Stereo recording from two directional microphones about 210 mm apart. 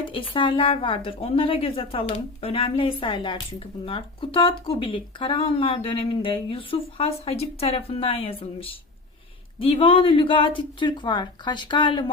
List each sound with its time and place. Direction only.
0.0 s speech: 25° left (ahead or behind)